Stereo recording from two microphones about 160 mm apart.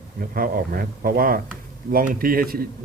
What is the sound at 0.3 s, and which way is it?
A man's voice, 65° right (ahead or behind).